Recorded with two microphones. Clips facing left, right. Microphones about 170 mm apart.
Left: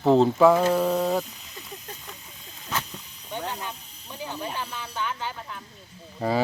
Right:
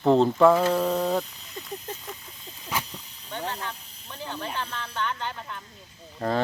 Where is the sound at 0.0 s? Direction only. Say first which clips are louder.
Left 1 dB; centre (ahead or behind).